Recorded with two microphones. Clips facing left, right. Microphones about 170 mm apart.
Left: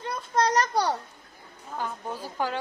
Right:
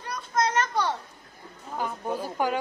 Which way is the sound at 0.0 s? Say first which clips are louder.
Left 1 dB; 25° left (ahead or behind).